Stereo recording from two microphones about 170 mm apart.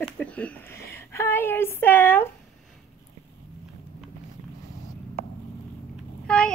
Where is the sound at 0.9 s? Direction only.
15° left (ahead or behind).